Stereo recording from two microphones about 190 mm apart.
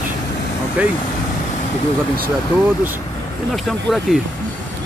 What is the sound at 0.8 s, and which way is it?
Speech, 10° right (ahead or behind).